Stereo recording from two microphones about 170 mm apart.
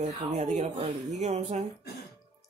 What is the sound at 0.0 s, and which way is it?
Speech, 40° right (ahead or behind).